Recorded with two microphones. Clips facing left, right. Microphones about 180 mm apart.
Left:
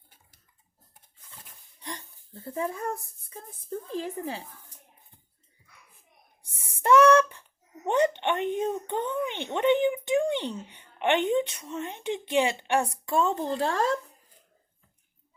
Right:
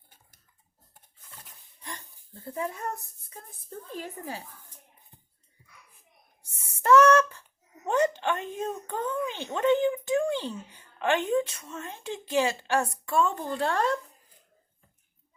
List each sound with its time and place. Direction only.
1.8 s speech: 30° left (ahead or behind)
6.5 s a sound: 30° left (ahead or behind)
7.9 s a child's voice: 25° left (ahead or behind)